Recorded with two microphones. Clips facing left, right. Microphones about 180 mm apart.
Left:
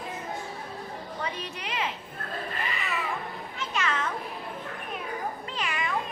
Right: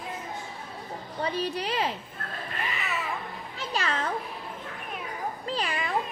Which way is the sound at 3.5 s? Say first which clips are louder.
Even; 35° right (ahead or behind).